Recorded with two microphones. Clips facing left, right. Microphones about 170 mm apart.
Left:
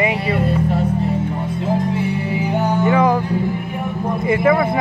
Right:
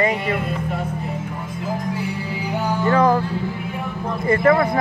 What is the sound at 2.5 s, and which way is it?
Music, 20° left (ahead or behind).